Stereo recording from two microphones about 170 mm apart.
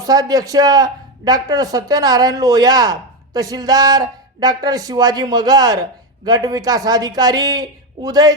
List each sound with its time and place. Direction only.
0.0 s a man's voice: 20° right (ahead or behind)